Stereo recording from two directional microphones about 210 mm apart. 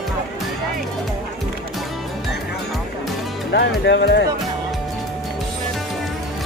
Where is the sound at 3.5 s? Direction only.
55° left (ahead or behind).